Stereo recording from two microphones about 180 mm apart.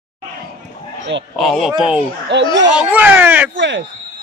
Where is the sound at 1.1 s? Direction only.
90° right.